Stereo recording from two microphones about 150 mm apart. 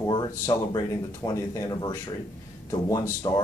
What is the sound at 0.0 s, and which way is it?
Speech, 25° left (ahead or behind).